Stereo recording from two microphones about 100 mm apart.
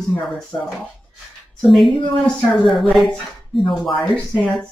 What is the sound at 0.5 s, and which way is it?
Speech, 35° left (ahead or behind).